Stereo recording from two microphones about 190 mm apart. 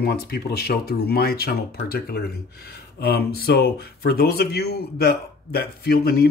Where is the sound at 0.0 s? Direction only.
55° left (ahead or behind).